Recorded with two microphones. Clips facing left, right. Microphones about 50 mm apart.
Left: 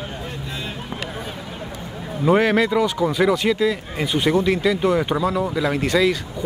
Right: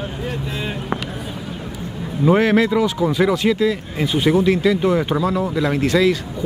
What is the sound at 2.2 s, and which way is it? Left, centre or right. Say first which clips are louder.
Speech: right 2 dB; centre.